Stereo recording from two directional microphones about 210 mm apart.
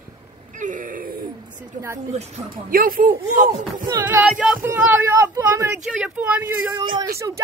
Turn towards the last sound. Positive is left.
turn(degrees=-15)  # may be behind; listen again after turning